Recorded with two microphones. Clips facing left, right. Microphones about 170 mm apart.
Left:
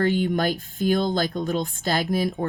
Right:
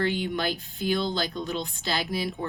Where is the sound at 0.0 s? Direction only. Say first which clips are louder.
Left 5 dB; 45° left (ahead or behind).